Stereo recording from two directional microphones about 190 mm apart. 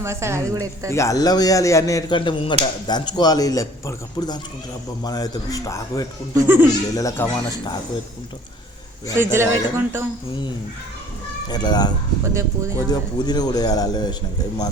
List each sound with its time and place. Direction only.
0.0 s a woman's voice: 15° right (ahead or behind)
0.9 s speech: 15° left (ahead or behind)
6.4 s a woman's voice: 10° right (ahead or behind)
6.9 s a child's voice: 15° left (ahead or behind)
9.1 s a woman's voice: 15° right (ahead or behind)
11.4 s speech: 20° left (ahead or behind)
12.2 s a woman's voice: 15° right (ahead or behind)
12.9 s speech: 20° left (ahead or behind)